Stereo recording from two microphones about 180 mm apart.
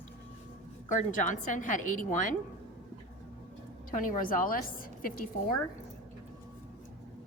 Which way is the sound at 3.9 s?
50° left (ahead or behind).